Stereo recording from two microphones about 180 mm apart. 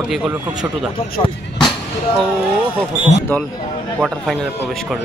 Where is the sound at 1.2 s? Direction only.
25° left (ahead or behind).